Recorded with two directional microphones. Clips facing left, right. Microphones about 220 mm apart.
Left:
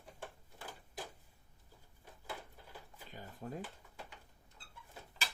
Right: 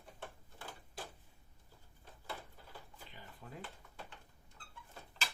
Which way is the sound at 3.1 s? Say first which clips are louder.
Left 9 dB; 45° left (ahead or behind).